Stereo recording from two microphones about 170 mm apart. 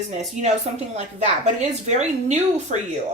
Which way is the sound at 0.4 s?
40° right (ahead or behind).